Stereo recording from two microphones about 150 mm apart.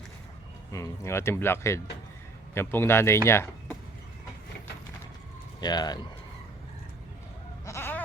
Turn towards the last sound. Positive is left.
turn(degrees=15)  # may be behind; listen again after turning